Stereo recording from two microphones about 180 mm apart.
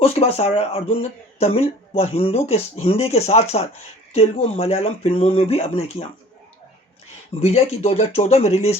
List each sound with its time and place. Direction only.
0.0 s speech: 35° left (ahead or behind)
7.4 s speech: 35° left (ahead or behind)